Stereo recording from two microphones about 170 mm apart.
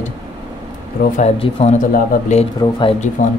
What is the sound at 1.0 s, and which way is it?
Speech, 65° left (ahead or behind).